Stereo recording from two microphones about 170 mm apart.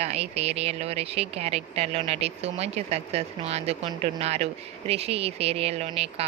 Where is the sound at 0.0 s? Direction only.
40° right (ahead or behind).